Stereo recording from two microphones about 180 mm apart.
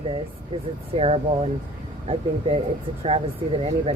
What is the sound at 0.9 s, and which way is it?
Speech, 35° right (ahead or behind).